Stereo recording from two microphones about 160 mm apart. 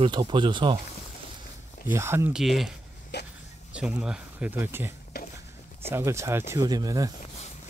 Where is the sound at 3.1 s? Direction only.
90° left.